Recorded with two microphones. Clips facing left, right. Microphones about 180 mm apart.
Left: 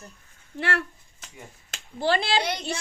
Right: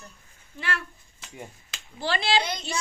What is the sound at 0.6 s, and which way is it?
Speech, 75° left (ahead or behind).